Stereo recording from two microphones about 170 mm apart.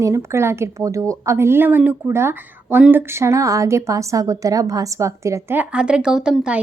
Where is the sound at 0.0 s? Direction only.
15° right (ahead or behind).